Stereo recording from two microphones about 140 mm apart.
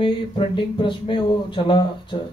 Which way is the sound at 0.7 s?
35° left (ahead or behind).